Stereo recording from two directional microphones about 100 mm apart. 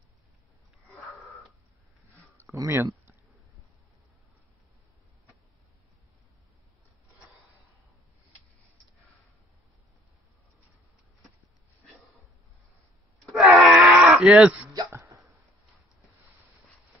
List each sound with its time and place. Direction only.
2.5 s speech: 30° right (ahead or behind)
13.2 s wail: centre (ahead or behind)
13.6 s a sound: centre (ahead or behind)
14.2 s speech: 15° right (ahead or behind)
14.7 s hiccup: 40° right (ahead or behind)